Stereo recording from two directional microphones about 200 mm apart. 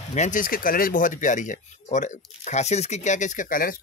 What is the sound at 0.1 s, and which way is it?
Speech, 40° left (ahead or behind).